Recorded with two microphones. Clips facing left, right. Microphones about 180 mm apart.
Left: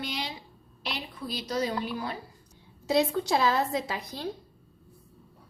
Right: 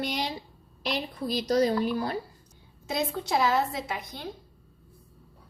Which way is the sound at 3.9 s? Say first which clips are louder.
Left 1 dB; 35° left (ahead or behind).